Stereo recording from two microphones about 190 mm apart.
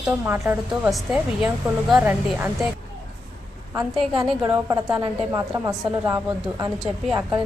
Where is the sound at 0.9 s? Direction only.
Centre (ahead or behind).